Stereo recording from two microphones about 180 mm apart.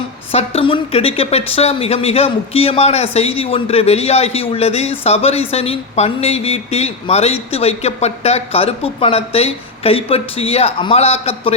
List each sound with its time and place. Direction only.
0.3 s a woman's voice: 35° left (ahead or behind)